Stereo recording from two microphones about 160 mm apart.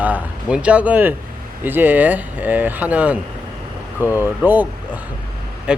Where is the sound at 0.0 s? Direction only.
10° right (ahead or behind).